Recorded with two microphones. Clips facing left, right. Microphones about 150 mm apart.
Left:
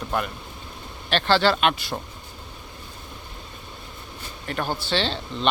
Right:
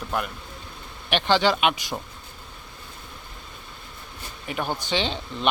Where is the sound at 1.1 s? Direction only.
15° right (ahead or behind).